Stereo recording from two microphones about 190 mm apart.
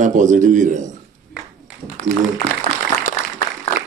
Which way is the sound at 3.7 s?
45° left (ahead or behind).